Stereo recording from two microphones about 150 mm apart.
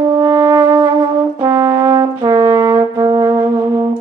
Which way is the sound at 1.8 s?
35° right (ahead or behind).